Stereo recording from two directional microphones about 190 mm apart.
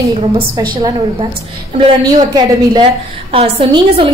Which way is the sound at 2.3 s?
25° right (ahead or behind).